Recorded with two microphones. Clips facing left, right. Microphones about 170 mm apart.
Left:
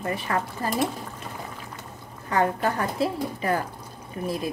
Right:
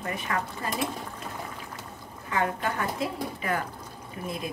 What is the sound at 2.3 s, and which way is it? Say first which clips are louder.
A woman's voice: left 5 dB; 40° left (ahead or behind).